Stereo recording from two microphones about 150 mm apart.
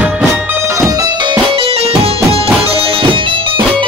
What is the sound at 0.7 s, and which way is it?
Music, 20° right (ahead or behind).